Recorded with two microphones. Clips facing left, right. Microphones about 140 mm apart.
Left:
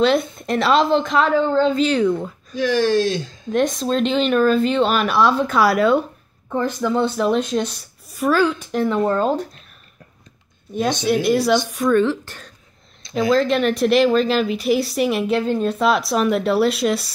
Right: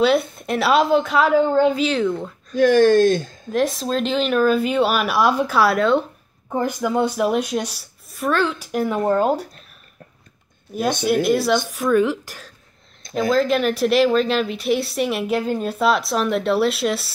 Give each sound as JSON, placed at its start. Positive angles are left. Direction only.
{"t": 0.0, "sound": "speech", "side_deg": -5}
{"t": 1.9, "sound": "speech", "side_deg": 0}
{"t": 2.5, "sound": "speech", "side_deg": -50}
{"t": 3.5, "sound": "speech", "side_deg": 0}
{"t": 6.5, "sound": "speech", "side_deg": -15}
{"t": 11.2, "sound": "speech", "side_deg": 0}